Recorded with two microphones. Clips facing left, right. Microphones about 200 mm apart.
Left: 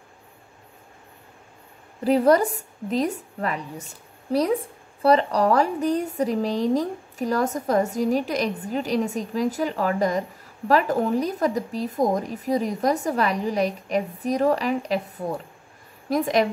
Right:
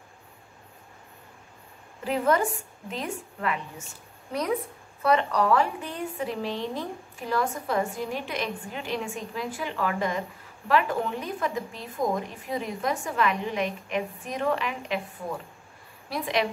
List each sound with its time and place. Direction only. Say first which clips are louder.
2.0 s a woman's voice: left 7 dB; 40° left (ahead or behind)